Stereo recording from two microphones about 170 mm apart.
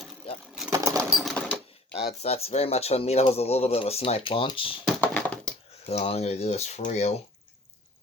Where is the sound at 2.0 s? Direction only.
35° left (ahead or behind).